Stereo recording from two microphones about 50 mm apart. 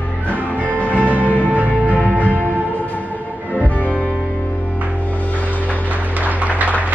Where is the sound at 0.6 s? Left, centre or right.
Left.